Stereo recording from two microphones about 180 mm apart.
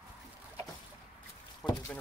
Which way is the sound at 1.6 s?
5° left (ahead or behind).